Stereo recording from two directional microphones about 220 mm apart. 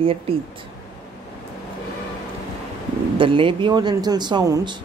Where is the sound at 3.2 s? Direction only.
25° right (ahead or behind).